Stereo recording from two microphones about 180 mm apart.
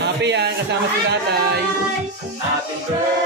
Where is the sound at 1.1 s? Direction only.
65° right (ahead or behind).